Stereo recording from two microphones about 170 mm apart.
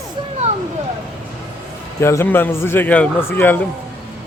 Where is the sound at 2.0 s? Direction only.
15° left (ahead or behind).